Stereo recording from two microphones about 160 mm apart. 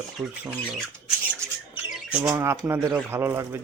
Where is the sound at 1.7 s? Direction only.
15° right (ahead or behind).